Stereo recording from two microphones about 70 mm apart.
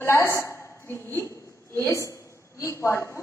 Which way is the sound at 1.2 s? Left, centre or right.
Left.